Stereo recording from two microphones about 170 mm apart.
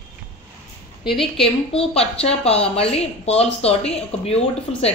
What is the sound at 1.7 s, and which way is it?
Speech, 35° left (ahead or behind).